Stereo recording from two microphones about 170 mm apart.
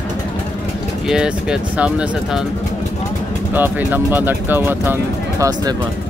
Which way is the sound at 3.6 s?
10° right (ahead or behind).